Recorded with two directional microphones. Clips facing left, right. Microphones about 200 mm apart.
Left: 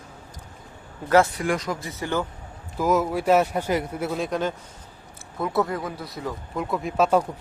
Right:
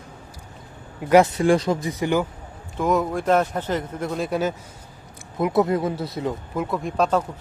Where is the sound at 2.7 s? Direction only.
5° left (ahead or behind).